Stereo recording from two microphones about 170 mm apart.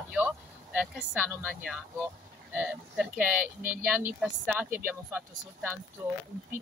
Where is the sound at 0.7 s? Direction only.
5° right (ahead or behind).